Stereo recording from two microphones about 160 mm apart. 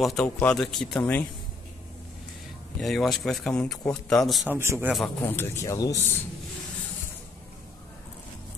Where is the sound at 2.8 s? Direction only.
Centre (ahead or behind).